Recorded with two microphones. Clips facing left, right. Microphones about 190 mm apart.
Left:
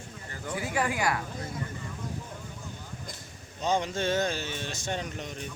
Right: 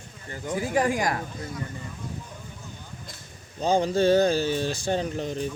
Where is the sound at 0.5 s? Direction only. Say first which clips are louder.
Right 6 dB; 40° right (ahead or behind).